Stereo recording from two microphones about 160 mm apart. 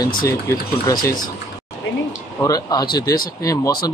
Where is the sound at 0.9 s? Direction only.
25° left (ahead or behind).